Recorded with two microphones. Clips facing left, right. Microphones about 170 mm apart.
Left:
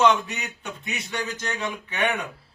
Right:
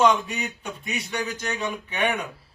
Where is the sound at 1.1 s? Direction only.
15° right (ahead or behind).